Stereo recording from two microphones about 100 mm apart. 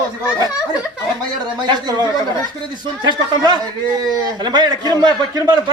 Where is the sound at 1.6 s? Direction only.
45° right (ahead or behind).